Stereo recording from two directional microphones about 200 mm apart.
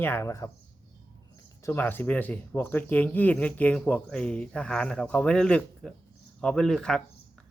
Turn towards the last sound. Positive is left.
turn(degrees=5)  # may be behind; listen again after turning